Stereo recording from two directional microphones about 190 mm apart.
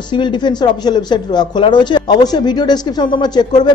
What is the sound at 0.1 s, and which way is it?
Speech, 25° left (ahead or behind).